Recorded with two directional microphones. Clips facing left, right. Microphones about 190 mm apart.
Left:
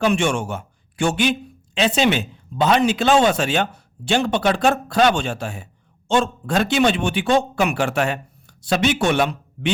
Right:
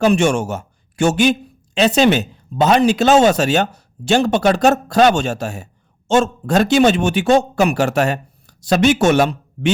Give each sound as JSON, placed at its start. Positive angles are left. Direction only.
{"t": 0.0, "sound": "a man's voice", "side_deg": -40}